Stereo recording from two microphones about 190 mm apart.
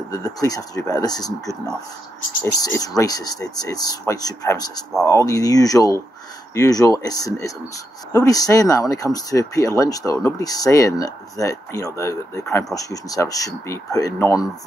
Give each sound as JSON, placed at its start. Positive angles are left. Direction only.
{"t": 0.1, "sound": "speech", "side_deg": 15}
{"t": 12.4, "sound": "speech", "side_deg": 5}
{"t": 12.7, "sound": "speech", "side_deg": 20}